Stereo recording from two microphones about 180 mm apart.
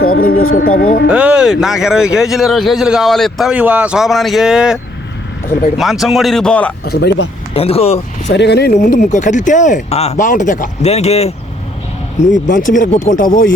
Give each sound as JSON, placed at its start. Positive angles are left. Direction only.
{"t": 0.0, "sound": "speech", "side_deg": 55}
{"t": 1.0, "sound": "speech", "side_deg": -5}
{"t": 6.8, "sound": "speech", "side_deg": 65}
{"t": 7.5, "sound": "speech", "side_deg": 35}
{"t": 8.3, "sound": "speech", "side_deg": 70}
{"t": 8.7, "sound": "speech", "side_deg": 45}